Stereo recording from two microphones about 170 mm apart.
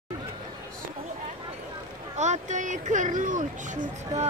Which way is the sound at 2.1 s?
45° right (ahead or behind).